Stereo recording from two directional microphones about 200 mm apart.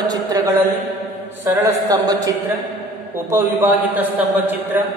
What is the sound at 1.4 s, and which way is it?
A man's voice, 15° right (ahead or behind).